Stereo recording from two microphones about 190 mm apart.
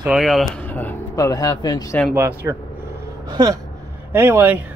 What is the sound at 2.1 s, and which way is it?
Speech, 10° right (ahead or behind).